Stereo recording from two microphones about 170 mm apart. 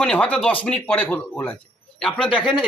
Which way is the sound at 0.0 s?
5° left (ahead or behind).